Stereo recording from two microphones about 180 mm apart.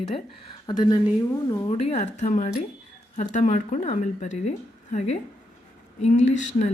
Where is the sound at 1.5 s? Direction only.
30° left (ahead or behind).